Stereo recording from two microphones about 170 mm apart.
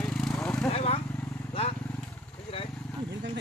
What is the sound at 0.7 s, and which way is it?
Vehicle, 35° left (ahead or behind).